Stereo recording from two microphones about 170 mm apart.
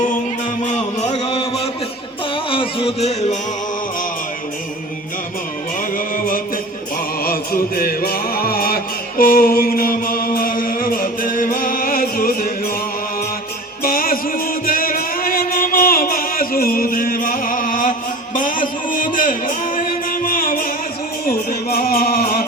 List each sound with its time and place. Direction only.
0.6 s music: 40° left (ahead or behind)
6.1 s music: 55° left (ahead or behind)
13.8 s music: 55° left (ahead or behind)